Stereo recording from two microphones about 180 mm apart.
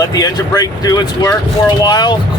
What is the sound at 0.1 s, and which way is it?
Speech, 20° left (ahead or behind).